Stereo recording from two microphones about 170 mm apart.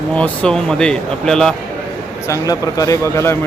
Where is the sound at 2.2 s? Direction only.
20° left (ahead or behind).